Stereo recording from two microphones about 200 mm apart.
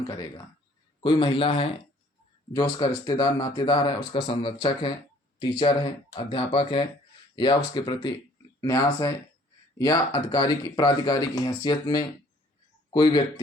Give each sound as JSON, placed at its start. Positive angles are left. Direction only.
{"t": 1.0, "sound": "speech", "side_deg": 25}